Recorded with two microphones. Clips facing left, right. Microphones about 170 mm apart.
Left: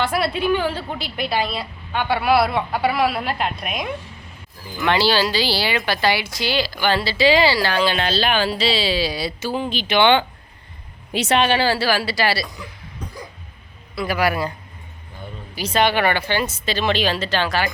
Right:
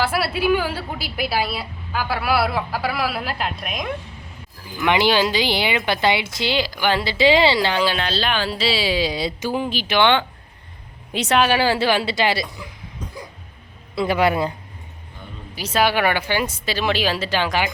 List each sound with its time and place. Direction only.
0.0 s a woman's voice: 5° right (ahead or behind)
4.8 s speech: 15° right (ahead or behind)
7.9 s a woman's voice: centre (ahead or behind); by 12.5 s 20° right (ahead or behind)
13.9 s speech: 25° right (ahead or behind)
15.5 s a woman's voice: 5° right (ahead or behind)